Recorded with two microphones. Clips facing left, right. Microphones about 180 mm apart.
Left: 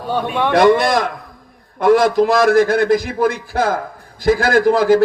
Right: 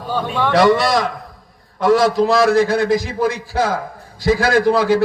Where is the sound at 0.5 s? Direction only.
50° left (ahead or behind).